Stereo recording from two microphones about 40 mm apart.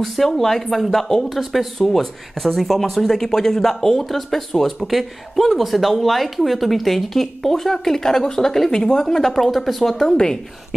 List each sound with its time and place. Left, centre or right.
0.0 s speech: centre
10.1 s speech: centre